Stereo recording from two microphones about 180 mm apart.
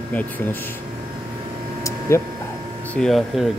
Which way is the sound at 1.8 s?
15° left (ahead or behind).